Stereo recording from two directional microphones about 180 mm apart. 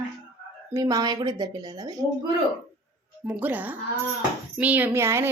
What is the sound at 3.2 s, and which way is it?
Speech, 10° right (ahead or behind).